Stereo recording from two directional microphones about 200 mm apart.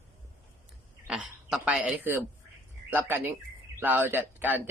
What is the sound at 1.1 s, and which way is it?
Speech, 5° right (ahead or behind).